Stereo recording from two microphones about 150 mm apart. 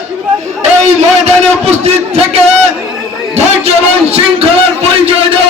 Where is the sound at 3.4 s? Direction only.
45° right (ahead or behind).